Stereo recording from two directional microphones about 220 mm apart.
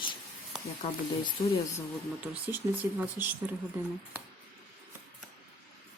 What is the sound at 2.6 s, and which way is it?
Speech, 10° right (ahead or behind).